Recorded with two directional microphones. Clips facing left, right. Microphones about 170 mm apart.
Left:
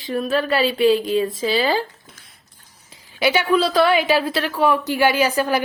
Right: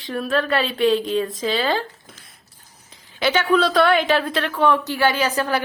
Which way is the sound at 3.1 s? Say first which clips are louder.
Left 1 dB; 10° left (ahead or behind).